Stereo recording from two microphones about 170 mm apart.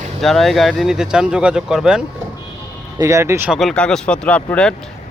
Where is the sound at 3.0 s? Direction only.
20° right (ahead or behind).